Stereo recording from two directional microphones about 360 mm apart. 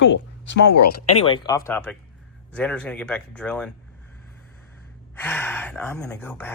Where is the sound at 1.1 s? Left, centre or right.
Centre.